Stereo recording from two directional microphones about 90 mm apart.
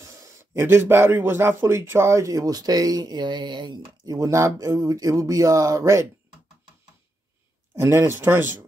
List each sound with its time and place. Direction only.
0.0 s speech: 35° right (ahead or behind)
7.7 s speech: 30° right (ahead or behind)